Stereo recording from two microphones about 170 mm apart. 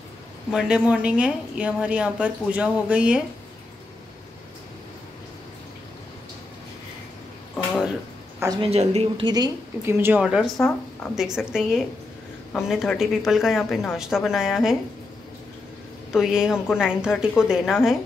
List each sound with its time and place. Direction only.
0.5 s a woman's voice: 5° right (ahead or behind)
7.5 s a sound: centre (ahead or behind)
8.4 s a woman's voice: 20° right (ahead or behind)
8.6 s a woman's voice: 35° right (ahead or behind); by 14.8 s centre (ahead or behind)
16.1 s a woman's voice: 5° right (ahead or behind)